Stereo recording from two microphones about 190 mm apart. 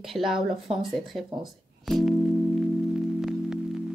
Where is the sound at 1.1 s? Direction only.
Centre (ahead or behind).